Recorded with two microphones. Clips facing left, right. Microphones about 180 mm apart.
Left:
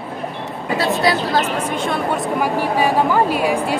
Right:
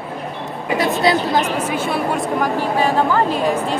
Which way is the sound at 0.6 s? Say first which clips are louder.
Right 1 dB; 15° right (ahead or behind).